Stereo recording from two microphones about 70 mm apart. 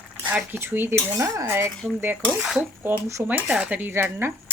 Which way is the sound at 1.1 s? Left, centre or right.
Right.